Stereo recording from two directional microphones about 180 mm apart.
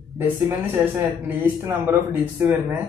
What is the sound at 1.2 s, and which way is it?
Speech, 10° right (ahead or behind).